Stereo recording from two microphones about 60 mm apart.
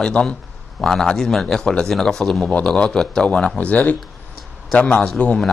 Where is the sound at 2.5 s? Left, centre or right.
Centre.